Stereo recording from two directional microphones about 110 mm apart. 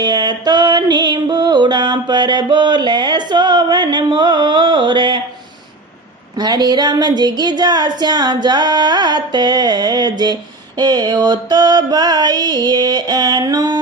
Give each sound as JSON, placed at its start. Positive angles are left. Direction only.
{"t": 0.0, "sound": "music", "side_deg": -40}
{"t": 6.3, "sound": "speech", "side_deg": -35}